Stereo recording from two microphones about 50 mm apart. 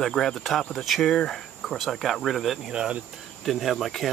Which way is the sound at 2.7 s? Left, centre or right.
Centre.